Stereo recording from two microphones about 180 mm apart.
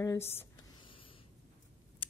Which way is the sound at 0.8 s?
30° left (ahead or behind).